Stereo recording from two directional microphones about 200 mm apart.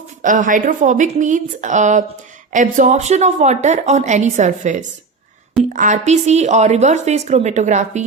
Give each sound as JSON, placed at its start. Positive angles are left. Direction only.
{"t": 0.2, "sound": "speech", "side_deg": -40}